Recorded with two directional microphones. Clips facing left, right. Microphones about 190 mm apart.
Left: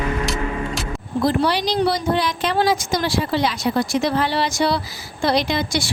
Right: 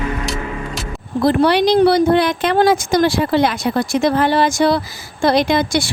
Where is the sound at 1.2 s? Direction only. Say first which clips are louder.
Right 6 dB; 60° right (ahead or behind).